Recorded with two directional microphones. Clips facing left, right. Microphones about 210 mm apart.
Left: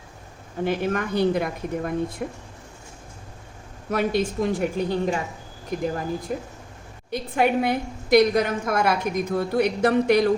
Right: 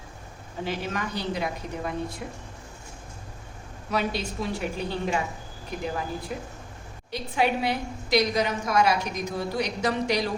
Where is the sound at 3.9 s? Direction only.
50° left (ahead or behind).